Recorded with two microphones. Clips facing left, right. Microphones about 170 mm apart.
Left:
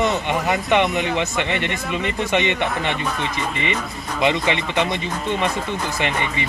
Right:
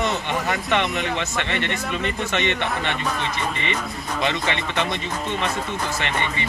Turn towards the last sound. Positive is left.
turn(degrees=15)  # may be behind; listen again after turning